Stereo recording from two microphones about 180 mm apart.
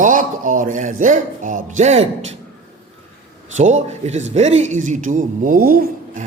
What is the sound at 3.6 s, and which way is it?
A man's voice, 40° right (ahead or behind).